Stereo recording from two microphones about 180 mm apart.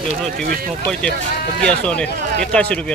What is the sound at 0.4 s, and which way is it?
Speech, 55° right (ahead or behind).